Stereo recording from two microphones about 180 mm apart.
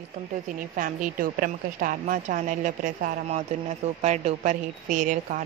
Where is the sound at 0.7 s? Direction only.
45° right (ahead or behind).